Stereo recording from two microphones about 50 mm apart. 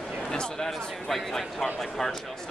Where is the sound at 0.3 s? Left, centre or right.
Centre.